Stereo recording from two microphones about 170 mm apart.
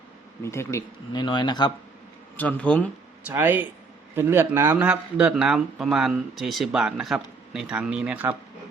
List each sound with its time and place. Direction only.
0.4 s speech: 15° left (ahead or behind)
2.3 s a man's voice: 10° left (ahead or behind)
3.2 s speech: 10° right (ahead or behind)